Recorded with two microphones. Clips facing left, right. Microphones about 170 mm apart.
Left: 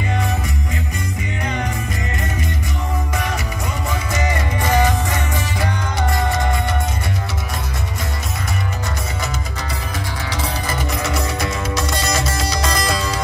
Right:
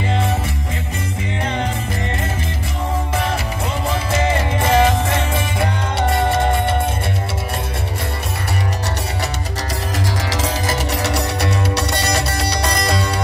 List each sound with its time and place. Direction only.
1.4 s music: 25° right (ahead or behind)
3.9 s music: 30° right (ahead or behind)
10.3 s music: 90° right; by 13.1 s 60° right (ahead or behind)